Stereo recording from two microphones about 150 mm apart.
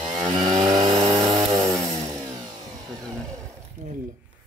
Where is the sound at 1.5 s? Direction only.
20° right (ahead or behind).